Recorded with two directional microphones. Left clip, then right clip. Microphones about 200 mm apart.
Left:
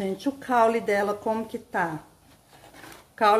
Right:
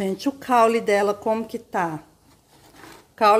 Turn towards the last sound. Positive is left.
turn(degrees=-20)  # may be behind; listen again after turning